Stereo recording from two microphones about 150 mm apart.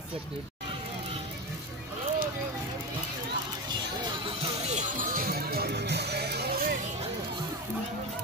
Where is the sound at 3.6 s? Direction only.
30° right (ahead or behind); by 6.8 s 85° right.